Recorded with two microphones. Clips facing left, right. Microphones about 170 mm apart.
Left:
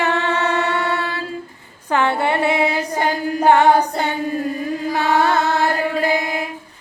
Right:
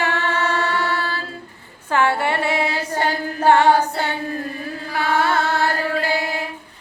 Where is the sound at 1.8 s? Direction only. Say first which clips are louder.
Left 1 dB; 20° left (ahead or behind).